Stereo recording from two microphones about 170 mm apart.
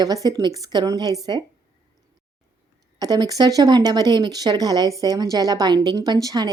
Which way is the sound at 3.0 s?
20° right (ahead or behind).